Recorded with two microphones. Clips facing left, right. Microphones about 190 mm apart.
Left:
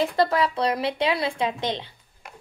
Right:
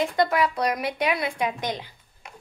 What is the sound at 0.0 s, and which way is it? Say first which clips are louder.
Speech: left 1 dB; 30° left (ahead or behind).